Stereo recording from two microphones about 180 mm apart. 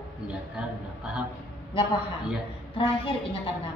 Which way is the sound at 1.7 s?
30° left (ahead or behind).